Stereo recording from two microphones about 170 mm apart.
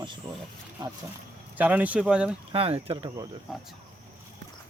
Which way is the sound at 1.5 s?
10° right (ahead or behind).